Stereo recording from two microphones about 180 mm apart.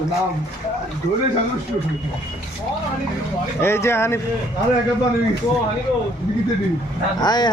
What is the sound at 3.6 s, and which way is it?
Speech, 15° left (ahead or behind).